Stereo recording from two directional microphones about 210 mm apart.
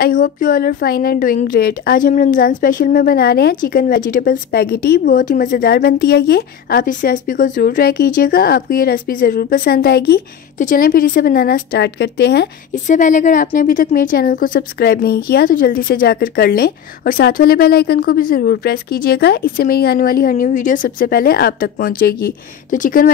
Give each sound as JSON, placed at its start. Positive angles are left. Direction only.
{"t": 0.0, "sound": "a woman's voice", "side_deg": 40}
{"t": 10.6, "sound": "a woman's voice", "side_deg": 40}
{"t": 12.7, "sound": "a woman's voice", "side_deg": 35}